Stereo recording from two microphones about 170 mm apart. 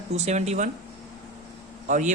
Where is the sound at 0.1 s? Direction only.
40° right (ahead or behind).